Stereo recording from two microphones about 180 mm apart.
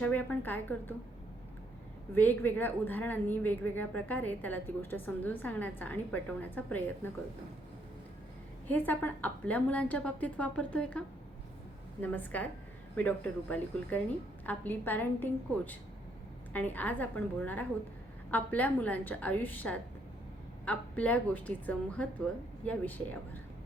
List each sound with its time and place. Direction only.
0.0 s a woman's voice: 10° left (ahead or behind)
2.1 s a woman's voice: 10° left (ahead or behind)
8.6 s a woman's voice: 10° left (ahead or behind)
12.0 s a woman's voice: 10° left (ahead or behind)